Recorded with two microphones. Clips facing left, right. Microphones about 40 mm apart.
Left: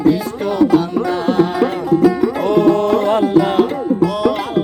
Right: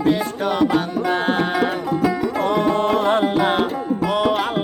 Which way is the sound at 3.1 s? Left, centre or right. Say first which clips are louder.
Left 4 dB; right.